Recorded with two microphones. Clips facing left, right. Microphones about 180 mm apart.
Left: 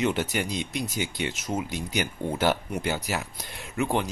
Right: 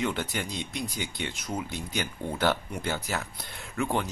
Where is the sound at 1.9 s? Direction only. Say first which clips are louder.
Left 4 dB; 20° left (ahead or behind).